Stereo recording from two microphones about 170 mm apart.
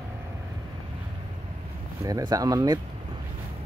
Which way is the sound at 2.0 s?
20° right (ahead or behind).